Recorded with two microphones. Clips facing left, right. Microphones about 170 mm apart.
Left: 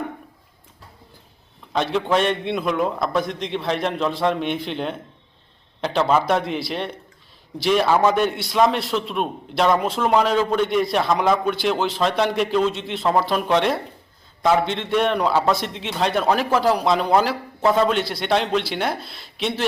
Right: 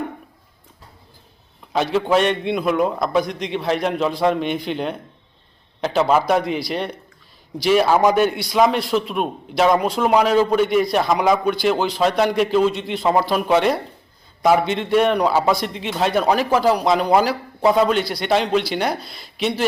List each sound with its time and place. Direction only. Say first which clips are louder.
1.7 s a man's voice: right 3 dB; 5° right (ahead or behind)